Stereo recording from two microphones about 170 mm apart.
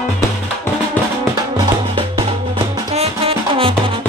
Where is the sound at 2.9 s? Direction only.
35° right (ahead or behind).